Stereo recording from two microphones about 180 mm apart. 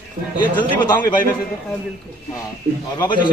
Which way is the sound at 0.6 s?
25° left (ahead or behind).